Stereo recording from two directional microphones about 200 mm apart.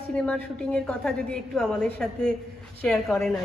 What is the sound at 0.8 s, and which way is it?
Speech, 5° left (ahead or behind).